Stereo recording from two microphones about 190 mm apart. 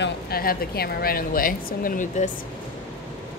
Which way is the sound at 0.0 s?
50° left (ahead or behind).